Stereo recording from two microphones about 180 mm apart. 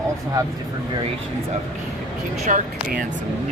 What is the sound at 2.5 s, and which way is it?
Speech, 45° right (ahead or behind).